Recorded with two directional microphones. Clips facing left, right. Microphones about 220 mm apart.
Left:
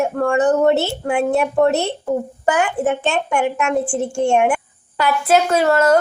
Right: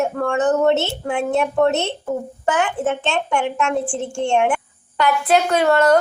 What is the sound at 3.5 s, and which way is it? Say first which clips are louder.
Speech: left 2 dB; 15° left (ahead or behind).